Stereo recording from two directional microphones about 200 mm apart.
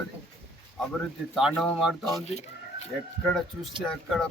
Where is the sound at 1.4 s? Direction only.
Centre (ahead or behind).